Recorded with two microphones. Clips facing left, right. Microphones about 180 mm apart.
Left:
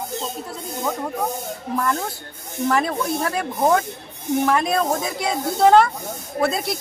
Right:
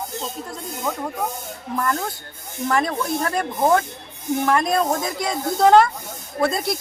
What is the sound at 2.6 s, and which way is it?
Speech, 5° left (ahead or behind).